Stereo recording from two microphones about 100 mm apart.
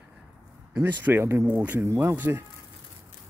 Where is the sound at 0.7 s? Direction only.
20° right (ahead or behind).